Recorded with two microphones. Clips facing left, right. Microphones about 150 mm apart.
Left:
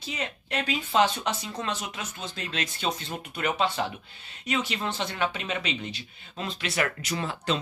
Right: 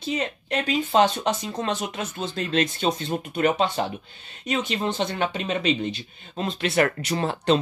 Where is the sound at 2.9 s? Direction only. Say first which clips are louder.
Right 7 dB; 30° right (ahead or behind); by 7.6 s 60° right (ahead or behind).